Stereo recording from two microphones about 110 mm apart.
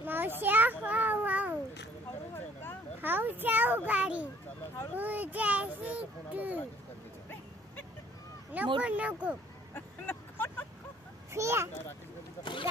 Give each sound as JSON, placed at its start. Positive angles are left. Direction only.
{"t": 0.0, "sound": "children playing", "side_deg": -20}
{"t": 0.8, "sound": "a sound", "side_deg": -15}
{"t": 2.3, "sound": "a sound", "side_deg": 20}
{"t": 3.0, "sound": "children playing", "side_deg": -20}
{"t": 4.9, "sound": "a child's voice", "side_deg": -15}
{"t": 8.8, "sound": "a child's voice", "side_deg": -10}
{"t": 9.8, "sound": "vehicle", "side_deg": 20}
{"t": 11.3, "sound": "a child's voice", "side_deg": -25}